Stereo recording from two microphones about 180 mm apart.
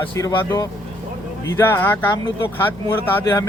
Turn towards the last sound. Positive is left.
turn(degrees=10)  # may be behind; listen again after turning